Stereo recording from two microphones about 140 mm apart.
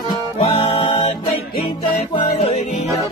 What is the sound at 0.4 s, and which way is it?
Music, 40° left (ahead or behind).